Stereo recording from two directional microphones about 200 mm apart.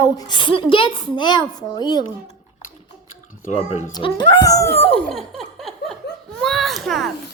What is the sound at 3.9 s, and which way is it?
Speech, 20° left (ahead or behind).